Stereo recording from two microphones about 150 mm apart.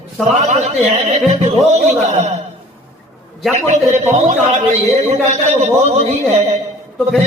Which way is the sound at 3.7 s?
50° right (ahead or behind).